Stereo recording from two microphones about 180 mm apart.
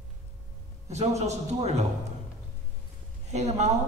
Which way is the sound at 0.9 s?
35° right (ahead or behind).